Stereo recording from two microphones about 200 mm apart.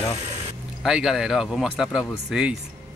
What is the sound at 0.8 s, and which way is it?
Speech, centre (ahead or behind).